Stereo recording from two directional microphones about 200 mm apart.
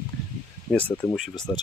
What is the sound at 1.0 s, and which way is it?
Speech, centre (ahead or behind).